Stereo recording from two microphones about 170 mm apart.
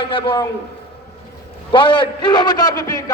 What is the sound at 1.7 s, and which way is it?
A man's voice, 30° left (ahead or behind).